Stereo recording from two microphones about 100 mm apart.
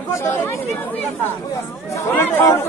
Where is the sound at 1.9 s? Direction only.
20° left (ahead or behind).